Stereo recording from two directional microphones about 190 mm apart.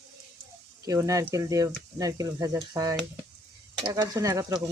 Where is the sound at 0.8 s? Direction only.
20° right (ahead or behind).